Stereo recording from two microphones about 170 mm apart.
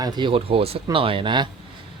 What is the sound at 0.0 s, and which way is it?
Speech, 25° right (ahead or behind).